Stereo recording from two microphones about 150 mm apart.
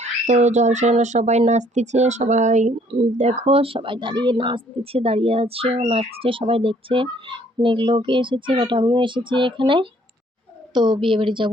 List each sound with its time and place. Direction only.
0.0 s speech: 50° right (ahead or behind); by 11.5 s 35° right (ahead or behind)